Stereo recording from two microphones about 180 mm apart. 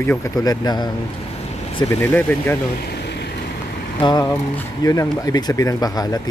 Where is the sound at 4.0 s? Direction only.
25° left (ahead or behind).